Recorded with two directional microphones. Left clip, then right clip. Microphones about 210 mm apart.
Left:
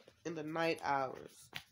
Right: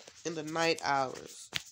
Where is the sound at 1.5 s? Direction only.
50° right (ahead or behind).